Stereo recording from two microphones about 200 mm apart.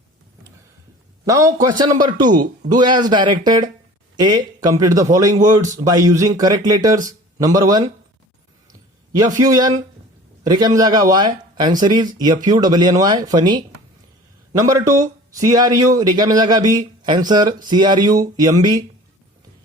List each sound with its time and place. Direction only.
1.2 s speech: 15° right (ahead or behind)
9.4 s speech: 20° right (ahead or behind)